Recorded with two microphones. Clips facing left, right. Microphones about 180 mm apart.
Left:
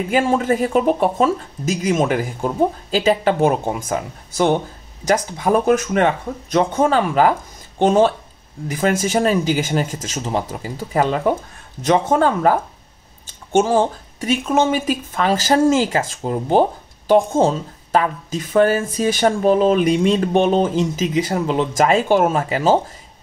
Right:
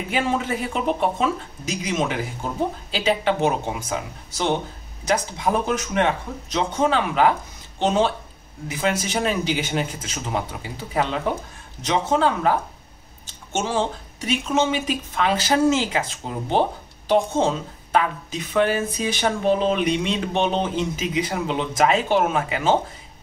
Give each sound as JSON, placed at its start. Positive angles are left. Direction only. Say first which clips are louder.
{"t": 0.1, "sound": "speech", "louder": "left 6 dB", "side_deg": 45}
{"t": 9.8, "sound": "speech", "louder": "left 5 dB", "side_deg": 90}
{"t": 10.1, "sound": "speech", "louder": "left 4 dB", "side_deg": 40}